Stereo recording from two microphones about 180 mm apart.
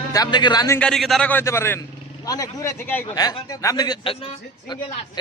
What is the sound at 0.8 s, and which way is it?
A man's voice, 5° left (ahead or behind).